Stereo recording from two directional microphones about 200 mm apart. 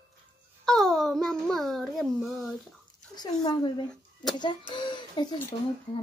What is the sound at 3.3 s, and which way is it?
Speech, 20° left (ahead or behind).